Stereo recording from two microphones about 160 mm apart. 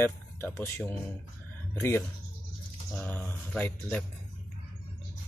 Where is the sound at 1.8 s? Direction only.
15° left (ahead or behind).